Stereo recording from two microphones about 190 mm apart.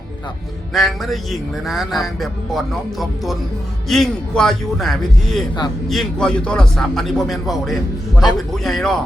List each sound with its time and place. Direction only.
0.7 s a man's voice: centre (ahead or behind)
8.1 s a man's voice: 20° left (ahead or behind)
8.5 s a man's voice: centre (ahead or behind)